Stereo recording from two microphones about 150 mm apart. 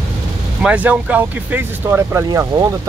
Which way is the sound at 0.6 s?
10° right (ahead or behind).